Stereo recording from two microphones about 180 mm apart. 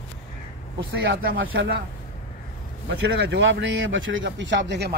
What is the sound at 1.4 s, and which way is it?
Speech, 90° right.